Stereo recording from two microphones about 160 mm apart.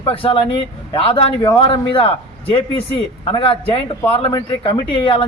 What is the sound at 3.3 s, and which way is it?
A man's voice, 35° left (ahead or behind).